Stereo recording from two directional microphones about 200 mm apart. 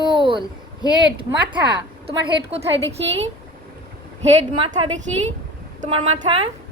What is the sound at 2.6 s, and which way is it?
A woman's voice, 30° right (ahead or behind).